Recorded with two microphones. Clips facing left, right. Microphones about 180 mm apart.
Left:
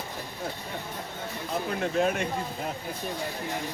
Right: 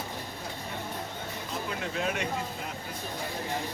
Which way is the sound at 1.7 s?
45° left (ahead or behind).